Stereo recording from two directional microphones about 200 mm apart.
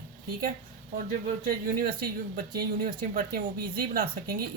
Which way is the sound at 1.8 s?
45° right (ahead or behind).